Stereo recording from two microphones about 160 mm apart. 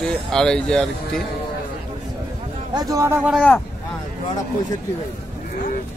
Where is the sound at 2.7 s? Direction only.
20° right (ahead or behind).